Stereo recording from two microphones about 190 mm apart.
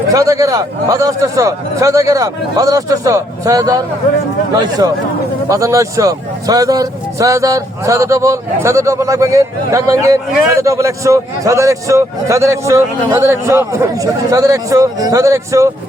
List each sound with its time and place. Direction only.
0.1 s a man's voice: 15° right (ahead or behind)